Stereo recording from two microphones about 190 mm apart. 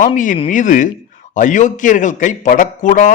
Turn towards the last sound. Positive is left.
turn(degrees=45)  # may be behind; listen again after turning